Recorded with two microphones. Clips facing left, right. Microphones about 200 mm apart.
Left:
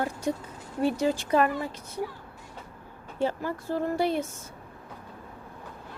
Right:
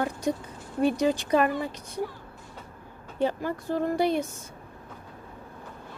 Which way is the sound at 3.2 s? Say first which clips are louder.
Right 1 dB; 20° right (ahead or behind).